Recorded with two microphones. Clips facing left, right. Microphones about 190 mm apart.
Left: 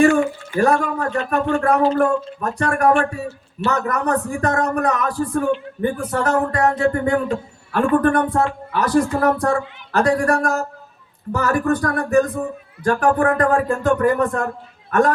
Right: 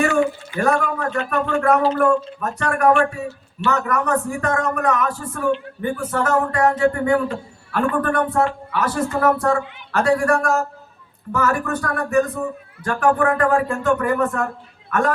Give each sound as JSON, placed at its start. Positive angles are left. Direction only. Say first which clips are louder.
{"t": 0.6, "sound": "a man's voice", "louder": "left 2 dB", "side_deg": 35}